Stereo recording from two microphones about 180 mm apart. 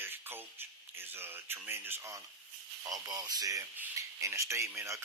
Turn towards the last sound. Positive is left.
turn(degrees=-15)  # may be behind; listen again after turning